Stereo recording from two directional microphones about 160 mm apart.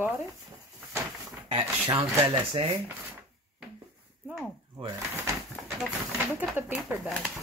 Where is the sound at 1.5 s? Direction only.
35° right (ahead or behind).